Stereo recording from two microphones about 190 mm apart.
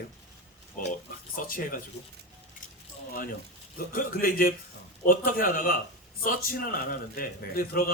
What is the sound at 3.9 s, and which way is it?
Speech, 50° left (ahead or behind).